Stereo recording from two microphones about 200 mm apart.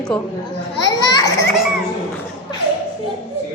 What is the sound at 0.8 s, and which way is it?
Children playing, 20° left (ahead or behind).